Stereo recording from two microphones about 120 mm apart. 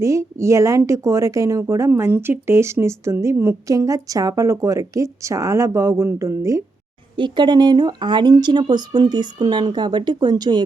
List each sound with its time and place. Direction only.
0.0 s speech: 25° right (ahead or behind)
7.2 s speech: 40° right (ahead or behind)